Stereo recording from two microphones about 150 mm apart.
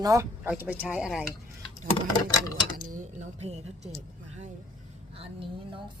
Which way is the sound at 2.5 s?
25° left (ahead or behind).